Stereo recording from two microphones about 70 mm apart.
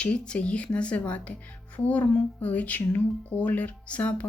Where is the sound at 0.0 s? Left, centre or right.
Centre.